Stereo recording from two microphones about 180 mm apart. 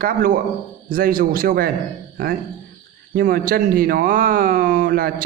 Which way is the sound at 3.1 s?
50° right (ahead or behind).